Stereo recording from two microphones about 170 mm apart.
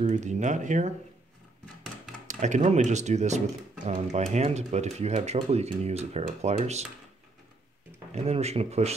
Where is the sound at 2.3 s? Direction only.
45° right (ahead or behind).